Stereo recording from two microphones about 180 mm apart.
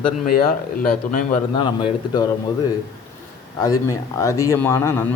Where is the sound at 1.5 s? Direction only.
25° left (ahead or behind).